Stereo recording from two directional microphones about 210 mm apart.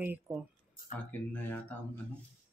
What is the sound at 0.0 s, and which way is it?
Speech, 10° right (ahead or behind).